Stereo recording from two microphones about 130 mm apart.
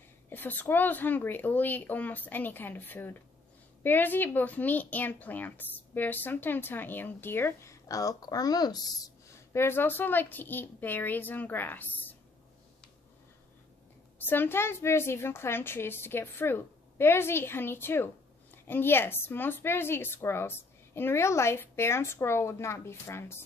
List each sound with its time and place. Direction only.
0.3 s speech: 15° left (ahead or behind)
14.1 s a woman's voice: 15° left (ahead or behind)